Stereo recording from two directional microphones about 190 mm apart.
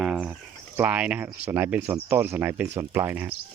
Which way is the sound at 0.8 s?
10° right (ahead or behind).